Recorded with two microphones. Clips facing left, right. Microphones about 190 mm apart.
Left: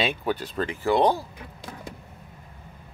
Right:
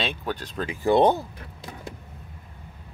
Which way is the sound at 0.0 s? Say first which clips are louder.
Left 3 dB; 10° left (ahead or behind).